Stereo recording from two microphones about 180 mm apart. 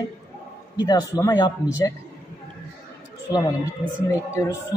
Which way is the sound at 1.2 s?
20° left (ahead or behind).